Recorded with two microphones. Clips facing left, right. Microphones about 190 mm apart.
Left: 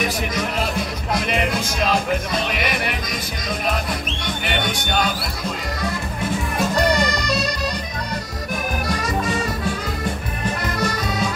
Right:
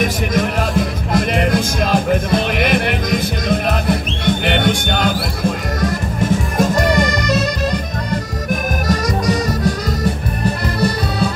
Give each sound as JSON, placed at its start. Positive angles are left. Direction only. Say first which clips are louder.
{"t": 0.0, "sound": "music", "louder": "right 6 dB", "side_deg": -50}
{"t": 6.6, "sound": "music", "louder": "right 3 dB", "side_deg": -45}
{"t": 8.8, "sound": "music", "louder": "right 7 dB", "side_deg": -40}
{"t": 10.4, "sound": "accordion", "louder": "right 5 dB", "side_deg": -35}